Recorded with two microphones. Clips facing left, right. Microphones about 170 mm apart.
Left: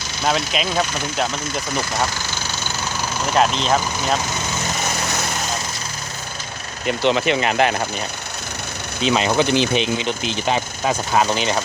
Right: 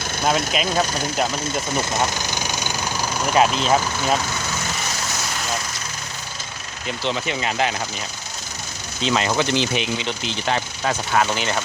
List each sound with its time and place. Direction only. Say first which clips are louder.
0.3 s speech: even; centre (ahead or behind)
2.0 s engine: right 1 dB; 15° right (ahead or behind)
3.2 s speech: even; 5° right (ahead or behind)
6.8 s speech: left 7 dB; 65° left (ahead or behind)
9.0 s speech: left 3 dB; 20° left (ahead or behind)